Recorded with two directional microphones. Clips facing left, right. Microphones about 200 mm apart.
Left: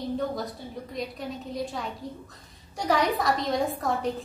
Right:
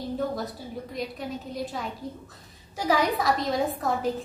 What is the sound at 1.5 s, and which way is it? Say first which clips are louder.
A woman's voice: even; centre (ahead or behind).